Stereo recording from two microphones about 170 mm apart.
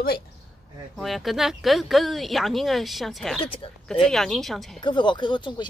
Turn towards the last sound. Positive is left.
turn(degrees=25)  # may be behind; listen again after turning